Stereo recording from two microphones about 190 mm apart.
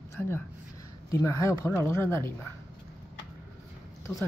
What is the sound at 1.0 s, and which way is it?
Speech, 15° left (ahead or behind).